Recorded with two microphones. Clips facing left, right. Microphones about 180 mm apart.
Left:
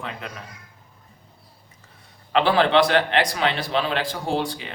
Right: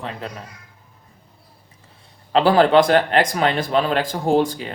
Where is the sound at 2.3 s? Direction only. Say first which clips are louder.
Right 4 dB; 40° right (ahead or behind).